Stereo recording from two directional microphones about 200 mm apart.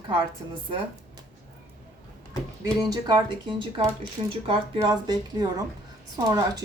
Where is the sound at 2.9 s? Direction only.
20° right (ahead or behind).